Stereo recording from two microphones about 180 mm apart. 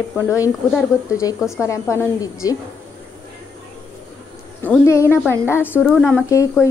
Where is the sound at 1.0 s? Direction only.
15° left (ahead or behind).